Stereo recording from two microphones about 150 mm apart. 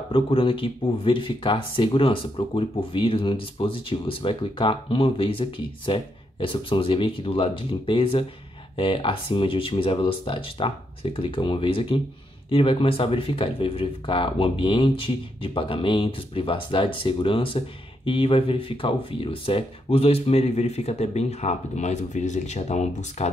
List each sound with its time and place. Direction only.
0.1 s speech: 35° left (ahead or behind)